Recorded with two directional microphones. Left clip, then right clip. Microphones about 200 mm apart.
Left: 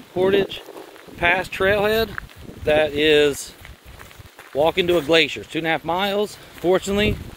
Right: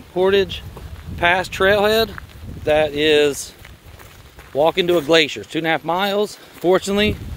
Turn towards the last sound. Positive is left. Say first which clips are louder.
# right 3 dB
turn(degrees=-25)  # may be behind; listen again after turning